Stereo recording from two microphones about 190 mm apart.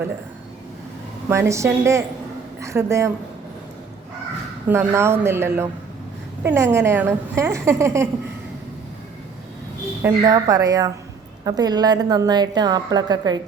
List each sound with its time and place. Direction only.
1.3 s a woman's voice: 15° right (ahead or behind)
4.7 s a woman's voice: 15° right (ahead or behind)
10.0 s a woman's voice: 20° right (ahead or behind)